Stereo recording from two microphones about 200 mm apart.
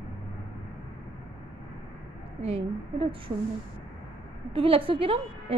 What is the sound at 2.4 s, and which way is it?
Speech, 30° right (ahead or behind).